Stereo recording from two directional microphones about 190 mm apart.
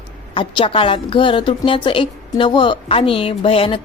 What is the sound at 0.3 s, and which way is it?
A woman's voice, 25° left (ahead or behind).